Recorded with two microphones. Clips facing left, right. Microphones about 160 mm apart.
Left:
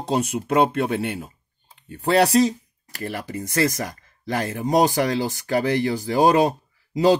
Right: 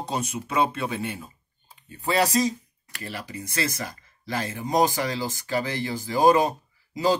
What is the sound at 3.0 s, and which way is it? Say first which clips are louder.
Speech: left 6 dB; 50° left (ahead or behind).